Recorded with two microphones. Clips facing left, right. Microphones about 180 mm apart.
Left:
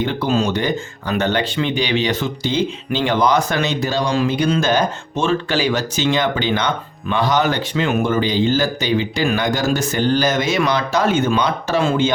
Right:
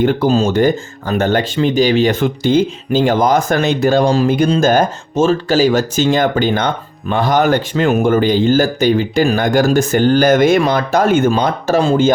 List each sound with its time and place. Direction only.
0.0 s speech: 45° right (ahead or behind)